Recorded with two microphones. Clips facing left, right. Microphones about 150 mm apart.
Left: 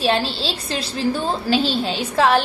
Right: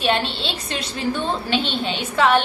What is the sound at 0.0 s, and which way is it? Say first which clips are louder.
A woman's voice: left 2 dB; 35° left (ahead or behind).